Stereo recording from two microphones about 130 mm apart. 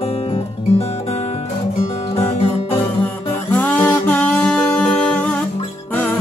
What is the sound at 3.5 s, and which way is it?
Music, 10° left (ahead or behind).